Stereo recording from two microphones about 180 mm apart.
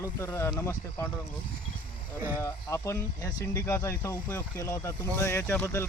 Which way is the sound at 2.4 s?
15° left (ahead or behind).